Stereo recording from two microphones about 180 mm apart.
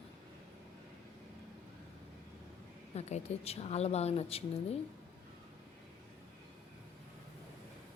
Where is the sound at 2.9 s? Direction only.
35° left (ahead or behind).